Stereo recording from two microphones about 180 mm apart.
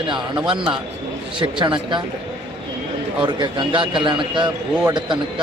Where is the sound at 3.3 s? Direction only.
25° right (ahead or behind).